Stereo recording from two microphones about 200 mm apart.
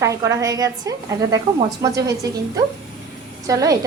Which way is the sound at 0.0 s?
15° right (ahead or behind).